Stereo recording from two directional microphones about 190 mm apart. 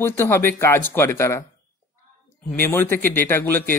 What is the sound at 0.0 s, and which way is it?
Speech, 10° left (ahead or behind).